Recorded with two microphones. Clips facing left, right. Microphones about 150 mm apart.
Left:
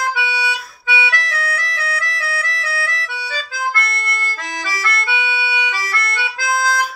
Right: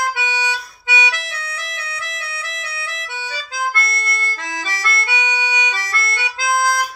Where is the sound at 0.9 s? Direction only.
20° right (ahead or behind).